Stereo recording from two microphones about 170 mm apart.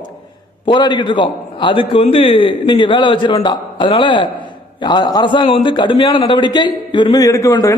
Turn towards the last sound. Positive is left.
turn(degrees=20)  # may be behind; listen again after turning